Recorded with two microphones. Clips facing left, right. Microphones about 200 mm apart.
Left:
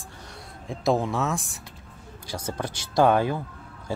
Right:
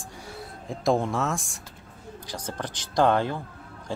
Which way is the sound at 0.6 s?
Centre (ahead or behind).